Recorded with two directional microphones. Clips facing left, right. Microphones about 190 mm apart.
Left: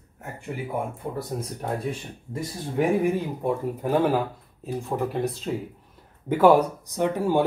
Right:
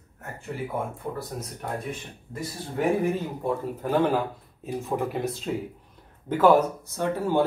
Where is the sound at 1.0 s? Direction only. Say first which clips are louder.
Left 1 dB; 20° left (ahead or behind).